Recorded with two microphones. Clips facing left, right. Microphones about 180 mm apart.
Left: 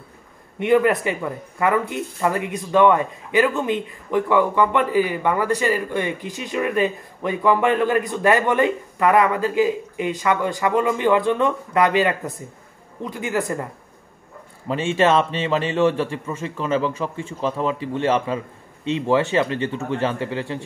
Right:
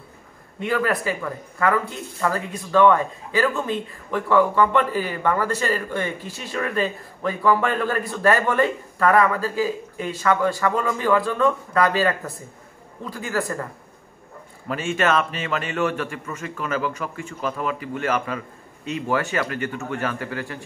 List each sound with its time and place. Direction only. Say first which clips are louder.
0.6 s a man's voice: left 6 dB; 20° left (ahead or behind)
14.7 s a man's voice: left 4 dB; 30° left (ahead or behind)